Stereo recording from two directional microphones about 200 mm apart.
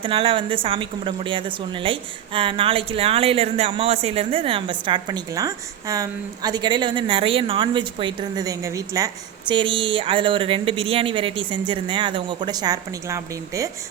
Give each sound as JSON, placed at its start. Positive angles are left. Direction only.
{"t": 0.0, "sound": "a woman's voice", "side_deg": -25}